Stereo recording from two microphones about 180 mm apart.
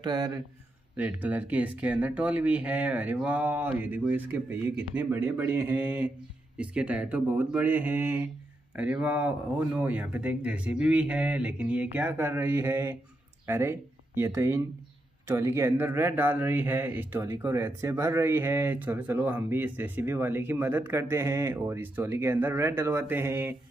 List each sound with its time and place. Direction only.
0.0 s speech: 25° right (ahead or behind)
0.9 s speech: 10° right (ahead or behind)